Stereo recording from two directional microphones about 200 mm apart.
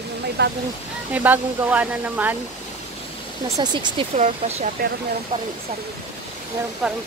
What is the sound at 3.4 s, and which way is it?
Speech, 20° right (ahead or behind).